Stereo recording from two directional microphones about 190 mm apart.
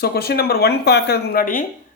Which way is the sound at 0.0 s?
55° left (ahead or behind).